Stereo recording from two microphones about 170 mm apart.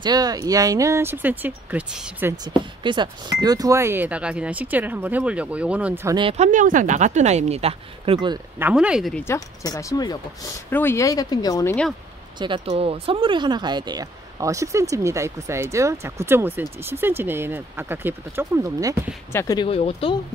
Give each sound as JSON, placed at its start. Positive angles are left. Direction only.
{"t": 0.0, "sound": "speech", "side_deg": -25}
{"t": 2.3, "sound": "speech", "side_deg": -25}
{"t": 6.0, "sound": "speech", "side_deg": -25}
{"t": 6.3, "sound": "speech", "side_deg": -45}
{"t": 8.5, "sound": "speech", "side_deg": -10}
{"t": 9.1, "sound": "speech", "side_deg": 15}
{"t": 12.4, "sound": "speech", "side_deg": -30}
{"t": 19.3, "sound": "speech", "side_deg": 20}
{"t": 19.7, "sound": "speech", "side_deg": 35}